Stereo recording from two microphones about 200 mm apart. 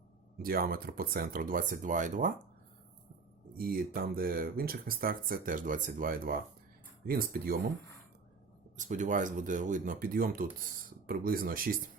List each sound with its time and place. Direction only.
0.4 s speech: 45° right (ahead or behind)
3.6 s speech: 45° right (ahead or behind)
8.8 s speech: 40° right (ahead or behind)